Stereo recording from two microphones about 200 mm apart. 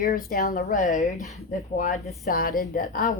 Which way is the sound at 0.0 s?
45° left (ahead or behind).